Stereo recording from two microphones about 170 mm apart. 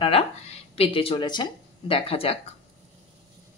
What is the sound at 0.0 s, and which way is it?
Speech, 35° left (ahead or behind).